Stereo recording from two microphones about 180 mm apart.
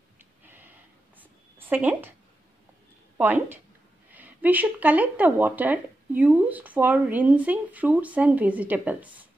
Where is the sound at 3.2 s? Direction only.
10° right (ahead or behind).